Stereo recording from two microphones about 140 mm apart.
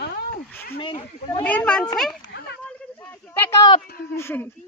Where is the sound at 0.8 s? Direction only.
40° left (ahead or behind).